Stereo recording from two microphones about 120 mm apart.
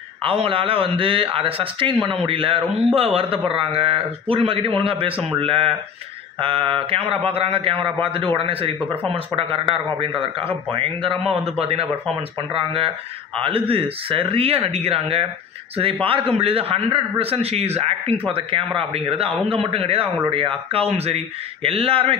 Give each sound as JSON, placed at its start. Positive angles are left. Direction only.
{"t": 0.2, "sound": "a man's voice", "side_deg": -50}